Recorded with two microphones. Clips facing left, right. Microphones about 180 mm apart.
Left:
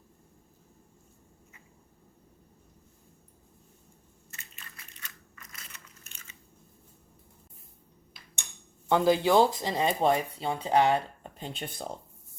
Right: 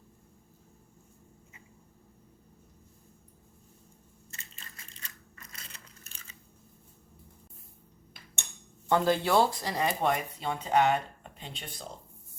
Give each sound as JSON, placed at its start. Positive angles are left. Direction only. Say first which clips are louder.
{"t": 4.3, "sound": "crushing", "louder": "even", "side_deg": -30}
{"t": 8.9, "sound": "speech", "louder": "left 3 dB", "side_deg": 10}